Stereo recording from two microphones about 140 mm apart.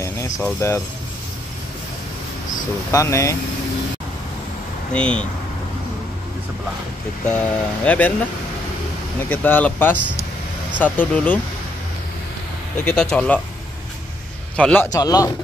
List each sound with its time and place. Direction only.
0.4 s speech: 20° left (ahead or behind)
2.9 s speech: 20° left (ahead or behind)
4.9 s speech: 5° left (ahead or behind)
7.2 s speech: 10° left (ahead or behind)
9.3 s speech: 10° left (ahead or behind)
12.8 s speech: 5° left (ahead or behind)
14.6 s speech: 10° left (ahead or behind)
14.9 s speech: 25° left (ahead or behind)